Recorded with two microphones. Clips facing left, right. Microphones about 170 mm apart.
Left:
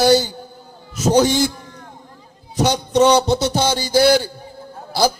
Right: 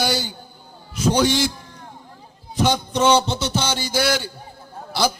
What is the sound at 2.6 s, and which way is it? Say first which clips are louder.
A man's voice: left 4 dB; 40° left (ahead or behind).